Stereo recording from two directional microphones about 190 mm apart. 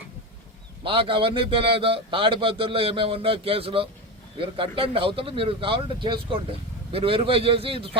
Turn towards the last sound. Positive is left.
turn(degrees=-30)  # may be behind; listen again after turning